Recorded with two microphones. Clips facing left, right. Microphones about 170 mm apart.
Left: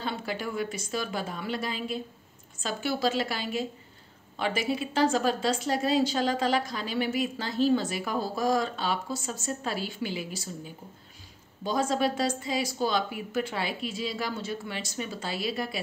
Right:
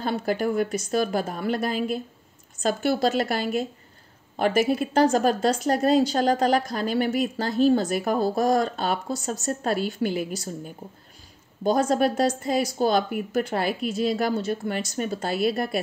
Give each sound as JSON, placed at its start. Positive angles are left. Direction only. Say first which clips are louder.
{"t": 0.0, "sound": "speech", "louder": "right 8 dB", "side_deg": -50}